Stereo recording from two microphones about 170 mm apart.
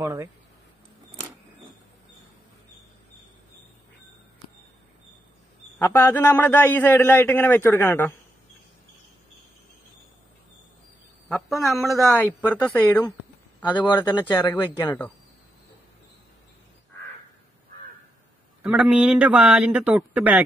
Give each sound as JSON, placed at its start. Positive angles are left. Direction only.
{"t": 0.0, "sound": "speech", "side_deg": -20}
{"t": 5.8, "sound": "a man's voice", "side_deg": 15}
{"t": 11.2, "sound": "a man's voice", "side_deg": 0}
{"t": 14.2, "sound": "a man's voice", "side_deg": 10}
{"t": 18.6, "sound": "a man's voice", "side_deg": -5}